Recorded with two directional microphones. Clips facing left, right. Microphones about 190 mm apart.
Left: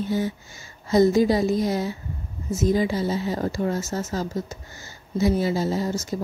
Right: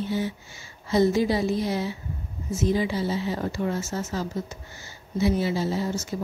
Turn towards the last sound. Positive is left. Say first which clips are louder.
# left 2 dB
turn(degrees=40)  # may be behind; listen again after turning